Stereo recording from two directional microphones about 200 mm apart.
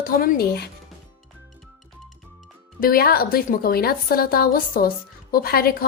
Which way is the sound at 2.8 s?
50° left (ahead or behind).